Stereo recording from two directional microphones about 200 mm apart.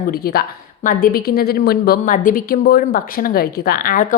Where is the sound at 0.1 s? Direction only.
50° left (ahead or behind).